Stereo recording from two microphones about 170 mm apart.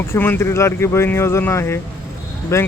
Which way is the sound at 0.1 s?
15° left (ahead or behind).